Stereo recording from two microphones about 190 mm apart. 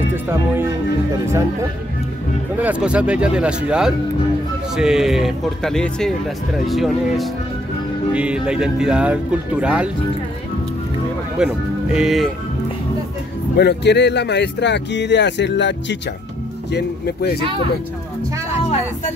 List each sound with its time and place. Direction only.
0.1 s speech: 10° right (ahead or behind)
11.3 s speech: 5° right (ahead or behind)
13.6 s speech: 60° left (ahead or behind)
16.7 s speech: 55° left (ahead or behind)